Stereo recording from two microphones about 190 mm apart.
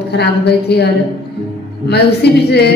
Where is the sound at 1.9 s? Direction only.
60° left (ahead or behind).